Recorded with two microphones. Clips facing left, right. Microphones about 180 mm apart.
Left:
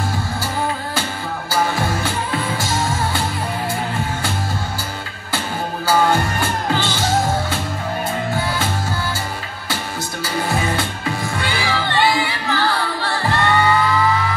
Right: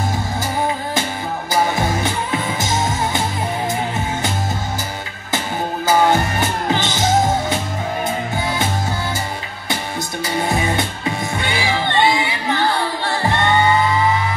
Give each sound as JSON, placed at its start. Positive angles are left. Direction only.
{"t": 1.5, "sound": "music", "side_deg": -20}
{"t": 5.9, "sound": "music", "side_deg": -20}
{"t": 10.2, "sound": "music", "side_deg": -20}